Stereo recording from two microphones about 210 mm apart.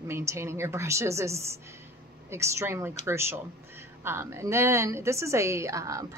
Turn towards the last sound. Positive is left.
turn(degrees=-15)  # may be behind; listen again after turning